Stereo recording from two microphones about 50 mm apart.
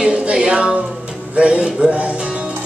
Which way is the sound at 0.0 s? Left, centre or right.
Right.